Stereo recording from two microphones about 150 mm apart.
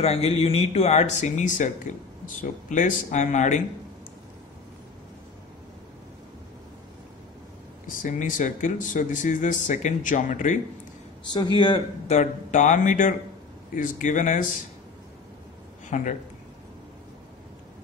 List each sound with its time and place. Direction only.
0.0 s speech: 45° left (ahead or behind)
7.8 s speech: 60° left (ahead or behind)
11.5 s speech: 30° left (ahead or behind)
12.1 s speech: 55° left (ahead or behind)
15.9 s speech: 55° left (ahead or behind)